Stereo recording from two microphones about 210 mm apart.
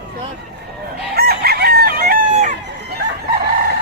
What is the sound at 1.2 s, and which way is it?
Chicken, 45° right (ahead or behind).